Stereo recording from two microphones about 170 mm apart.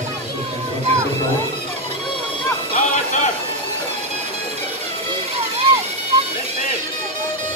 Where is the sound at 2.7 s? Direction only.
45° left (ahead or behind).